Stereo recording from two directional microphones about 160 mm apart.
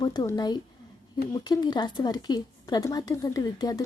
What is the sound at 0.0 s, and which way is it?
Speech, 25° left (ahead or behind).